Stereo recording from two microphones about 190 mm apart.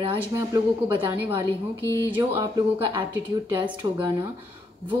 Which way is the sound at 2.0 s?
10° right (ahead or behind).